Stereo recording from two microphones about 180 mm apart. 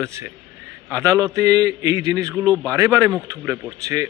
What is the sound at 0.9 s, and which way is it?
Speech, 20° right (ahead or behind).